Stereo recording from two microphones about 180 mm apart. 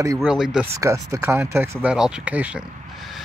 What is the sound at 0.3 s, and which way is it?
Speech, 5° right (ahead or behind).